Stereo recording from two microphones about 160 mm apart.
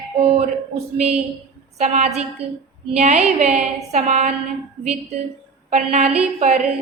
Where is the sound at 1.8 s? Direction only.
45° right (ahead or behind).